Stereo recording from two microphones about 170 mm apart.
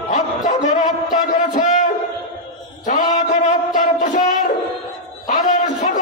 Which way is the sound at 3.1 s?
45° left (ahead or behind).